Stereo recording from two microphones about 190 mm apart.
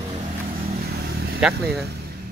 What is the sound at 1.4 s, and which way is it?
Speech, centre (ahead or behind).